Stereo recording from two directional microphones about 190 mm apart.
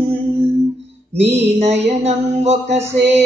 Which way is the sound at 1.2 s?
35° right (ahead or behind).